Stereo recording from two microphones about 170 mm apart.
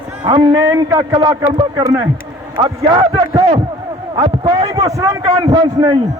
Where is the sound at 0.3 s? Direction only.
30° right (ahead or behind).